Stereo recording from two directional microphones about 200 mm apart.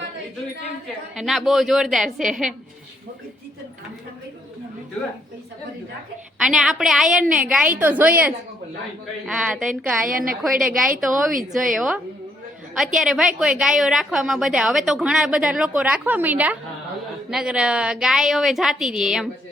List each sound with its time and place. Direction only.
1.1 s a woman's voice: centre (ahead or behind)
6.4 s a woman's voice: centre (ahead or behind)
10.1 s a woman's voice: 45° right (ahead or behind)
11.5 s a woman's voice: centre (ahead or behind)